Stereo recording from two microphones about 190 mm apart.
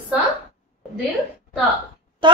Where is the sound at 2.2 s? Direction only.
25° right (ahead or behind).